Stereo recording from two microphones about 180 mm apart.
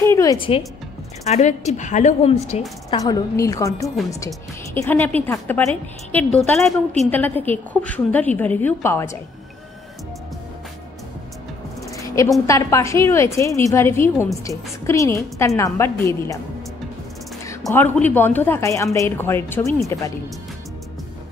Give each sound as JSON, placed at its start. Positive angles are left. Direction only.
{"t": 0.1, "sound": "music", "side_deg": 20}
{"t": 1.2, "sound": "speech", "side_deg": 40}
{"t": 2.9, "sound": "a woman's voice", "side_deg": 20}
{"t": 12.4, "sound": "a woman's voice", "side_deg": 15}
{"t": 17.5, "sound": "a woman's voice", "side_deg": 15}